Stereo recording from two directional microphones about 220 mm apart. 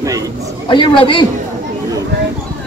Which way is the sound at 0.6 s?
20° left (ahead or behind).